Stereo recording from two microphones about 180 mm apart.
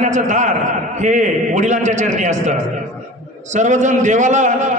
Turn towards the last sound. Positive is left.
turn(degrees=-40)  # may be behind; listen again after turning